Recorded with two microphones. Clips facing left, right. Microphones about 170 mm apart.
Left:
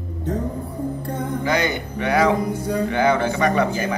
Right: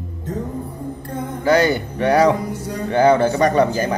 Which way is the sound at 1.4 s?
40° right (ahead or behind).